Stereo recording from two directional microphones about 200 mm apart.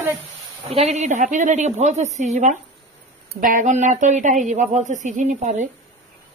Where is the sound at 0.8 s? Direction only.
35° right (ahead or behind).